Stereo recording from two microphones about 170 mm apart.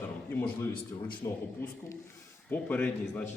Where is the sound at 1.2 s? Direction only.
20° left (ahead or behind).